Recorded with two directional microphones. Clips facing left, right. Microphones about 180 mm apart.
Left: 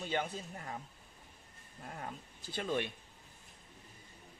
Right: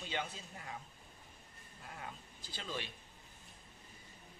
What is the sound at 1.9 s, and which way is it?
Speech, 45° left (ahead or behind).